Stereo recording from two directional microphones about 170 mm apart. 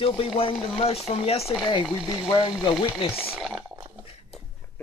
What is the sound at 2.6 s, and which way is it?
Speech, 30° left (ahead or behind).